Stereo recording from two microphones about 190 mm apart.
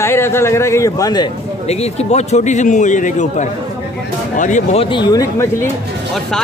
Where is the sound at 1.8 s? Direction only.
35° left (ahead or behind); by 5.4 s 20° left (ahead or behind).